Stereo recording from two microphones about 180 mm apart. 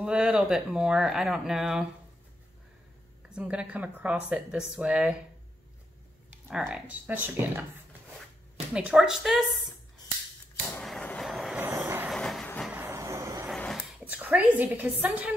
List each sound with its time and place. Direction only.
0.0 s speech: 5° right (ahead or behind)
3.3 s speech: 5° right (ahead or behind)
6.3 s speech: 5° right (ahead or behind)
8.7 s speech: 5° right (ahead or behind)
10.7 s vehicle: 5° left (ahead or behind)
11.6 s train: 10° right (ahead or behind)
12.1 s train: centre (ahead or behind)
12.7 s vehicle: 15° right (ahead or behind)
13.6 s speech: centre (ahead or behind)